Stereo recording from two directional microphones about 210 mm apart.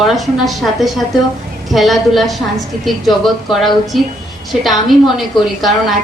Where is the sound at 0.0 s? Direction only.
Centre (ahead or behind).